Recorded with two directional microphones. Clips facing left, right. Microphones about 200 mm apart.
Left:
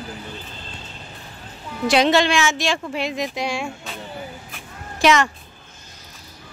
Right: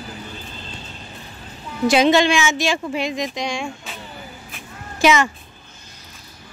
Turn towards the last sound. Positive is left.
turn(degrees=0)  # may be behind; listen again after turning